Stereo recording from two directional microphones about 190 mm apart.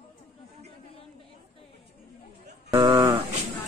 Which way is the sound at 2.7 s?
20° right (ahead or behind).